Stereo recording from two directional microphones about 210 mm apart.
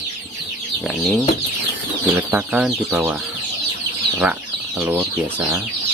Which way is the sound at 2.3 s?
5° right (ahead or behind).